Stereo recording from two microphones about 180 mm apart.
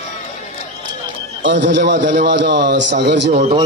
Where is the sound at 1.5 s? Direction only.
75° right (ahead or behind).